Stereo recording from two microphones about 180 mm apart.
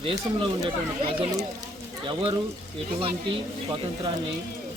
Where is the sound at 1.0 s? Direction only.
30° right (ahead or behind).